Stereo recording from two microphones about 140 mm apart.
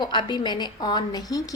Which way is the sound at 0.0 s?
35° left (ahead or behind).